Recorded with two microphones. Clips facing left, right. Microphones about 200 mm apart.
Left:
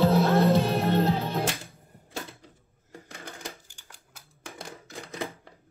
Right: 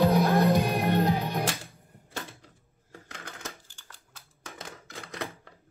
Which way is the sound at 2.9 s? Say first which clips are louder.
Left 2 dB; 15° left (ahead or behind).